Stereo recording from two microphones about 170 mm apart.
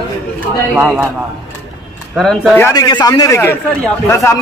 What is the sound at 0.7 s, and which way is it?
Speech, 10° right (ahead or behind).